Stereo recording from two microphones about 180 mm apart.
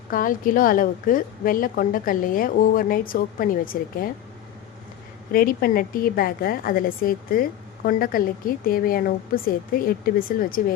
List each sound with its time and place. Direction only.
0.1 s a woman's voice: 50° left (ahead or behind)
5.3 s a woman's voice: 55° left (ahead or behind)